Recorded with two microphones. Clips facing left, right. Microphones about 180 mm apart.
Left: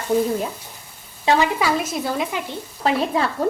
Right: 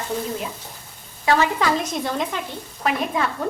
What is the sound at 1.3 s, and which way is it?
Speech, 15° left (ahead or behind).